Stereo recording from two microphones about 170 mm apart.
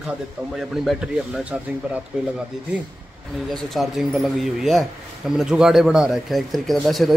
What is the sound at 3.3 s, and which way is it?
Speech, centre (ahead or behind).